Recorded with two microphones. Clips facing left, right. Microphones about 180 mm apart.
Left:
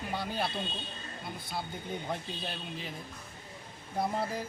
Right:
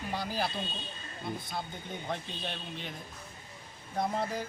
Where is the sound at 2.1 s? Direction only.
5° left (ahead or behind).